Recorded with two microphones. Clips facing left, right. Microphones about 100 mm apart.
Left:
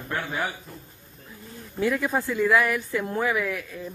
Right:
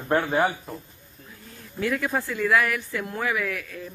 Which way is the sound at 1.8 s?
15° left (ahead or behind).